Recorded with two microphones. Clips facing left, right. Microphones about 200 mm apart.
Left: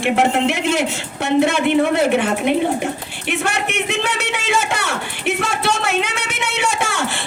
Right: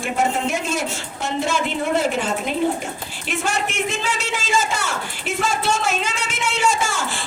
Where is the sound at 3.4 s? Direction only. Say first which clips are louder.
Even; 60° left (ahead or behind).